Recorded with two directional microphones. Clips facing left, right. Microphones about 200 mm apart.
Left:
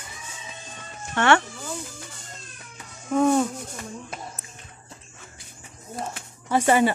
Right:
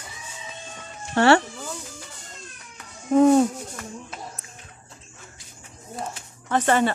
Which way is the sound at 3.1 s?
30° right (ahead or behind).